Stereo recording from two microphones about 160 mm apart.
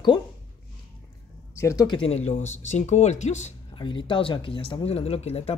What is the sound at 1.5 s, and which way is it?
Speech, 20° left (ahead or behind).